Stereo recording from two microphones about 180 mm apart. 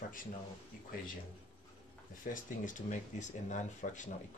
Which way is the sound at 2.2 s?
50° left (ahead or behind).